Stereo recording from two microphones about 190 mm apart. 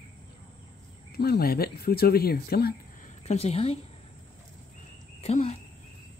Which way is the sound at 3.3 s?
35° left (ahead or behind).